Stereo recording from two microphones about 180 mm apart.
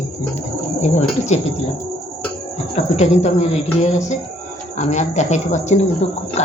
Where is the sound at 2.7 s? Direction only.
40° left (ahead or behind).